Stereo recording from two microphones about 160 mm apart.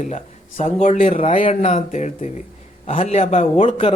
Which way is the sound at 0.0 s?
45° left (ahead or behind).